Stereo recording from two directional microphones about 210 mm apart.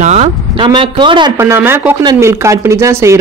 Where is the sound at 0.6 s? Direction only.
20° right (ahead or behind).